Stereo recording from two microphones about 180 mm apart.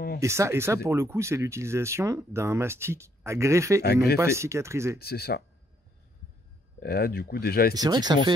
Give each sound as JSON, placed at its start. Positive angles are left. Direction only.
{"t": 0.2, "sound": "speech", "side_deg": -15}
{"t": 3.8, "sound": "speech", "side_deg": 60}
{"t": 4.2, "sound": "speech", "side_deg": -15}
{"t": 4.9, "sound": "speech", "side_deg": 60}
{"t": 6.8, "sound": "speech", "side_deg": 60}
{"t": 7.7, "sound": "speech", "side_deg": -20}